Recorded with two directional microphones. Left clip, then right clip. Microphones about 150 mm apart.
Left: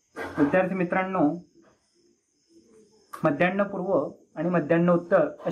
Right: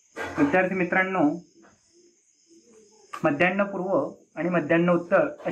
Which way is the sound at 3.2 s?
35° left (ahead or behind).